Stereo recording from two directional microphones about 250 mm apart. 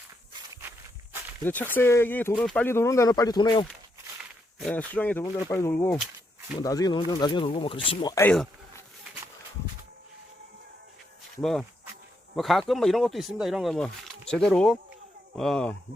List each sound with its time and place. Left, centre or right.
1.5 s speech: centre
4.6 s speech: centre
11.3 s speech: centre